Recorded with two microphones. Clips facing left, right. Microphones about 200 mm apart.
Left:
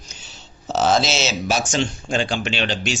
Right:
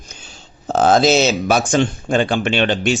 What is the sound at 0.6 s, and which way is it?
Speech, 50° right (ahead or behind).